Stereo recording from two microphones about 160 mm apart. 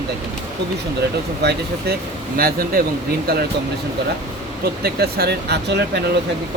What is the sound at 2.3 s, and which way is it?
Speech, 65° right (ahead or behind).